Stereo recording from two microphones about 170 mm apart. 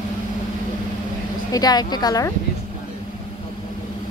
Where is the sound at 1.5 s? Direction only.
25° left (ahead or behind).